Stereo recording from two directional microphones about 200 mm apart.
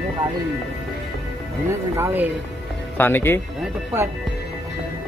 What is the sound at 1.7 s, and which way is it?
Speech, 15° right (ahead or behind).